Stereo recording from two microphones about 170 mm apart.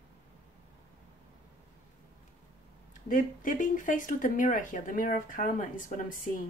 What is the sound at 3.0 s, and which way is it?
Speech, 50° left (ahead or behind).